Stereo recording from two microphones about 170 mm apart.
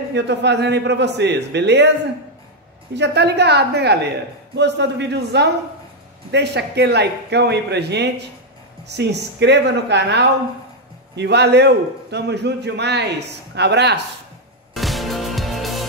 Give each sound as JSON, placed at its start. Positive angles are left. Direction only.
{"t": 0.1, "sound": "a man's voice", "side_deg": -90}
{"t": 2.9, "sound": "a man's voice", "side_deg": -90}
{"t": 4.6, "sound": "a man's voice", "side_deg": -90}
{"t": 14.7, "sound": "music", "side_deg": 0}